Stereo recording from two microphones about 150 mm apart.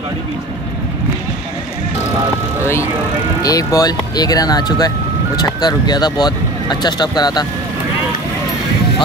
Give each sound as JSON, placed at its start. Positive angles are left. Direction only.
{"t": 2.6, "sound": "speech", "side_deg": 15}